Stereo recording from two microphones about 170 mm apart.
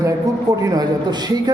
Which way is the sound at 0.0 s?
20° right (ahead or behind).